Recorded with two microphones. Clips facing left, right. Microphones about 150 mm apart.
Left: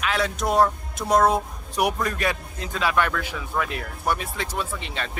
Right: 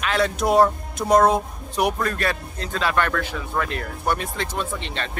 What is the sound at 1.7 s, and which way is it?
Speech, 10° left (ahead or behind).